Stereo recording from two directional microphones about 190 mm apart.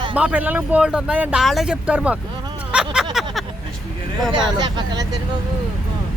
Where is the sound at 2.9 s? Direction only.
Centre (ahead or behind).